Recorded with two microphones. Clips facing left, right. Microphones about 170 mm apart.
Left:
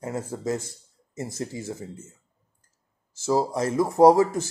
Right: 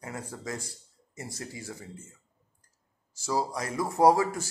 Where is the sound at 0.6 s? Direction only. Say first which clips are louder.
Left 1 dB; 20° left (ahead or behind).